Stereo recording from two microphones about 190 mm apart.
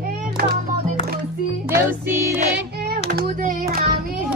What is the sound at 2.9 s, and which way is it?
Child singing, 55° right (ahead or behind).